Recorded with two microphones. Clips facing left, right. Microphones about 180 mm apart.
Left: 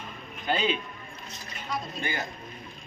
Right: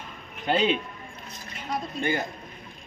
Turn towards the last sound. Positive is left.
turn(degrees=-55)  # may be behind; listen again after turning